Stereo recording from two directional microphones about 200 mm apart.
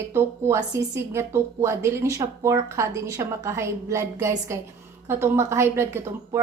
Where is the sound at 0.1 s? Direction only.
15° right (ahead or behind).